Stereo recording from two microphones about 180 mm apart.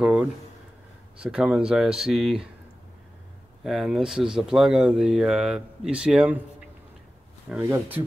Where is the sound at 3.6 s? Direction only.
Centre (ahead or behind).